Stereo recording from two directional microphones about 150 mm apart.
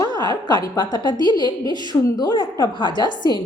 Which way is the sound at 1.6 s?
30° right (ahead or behind).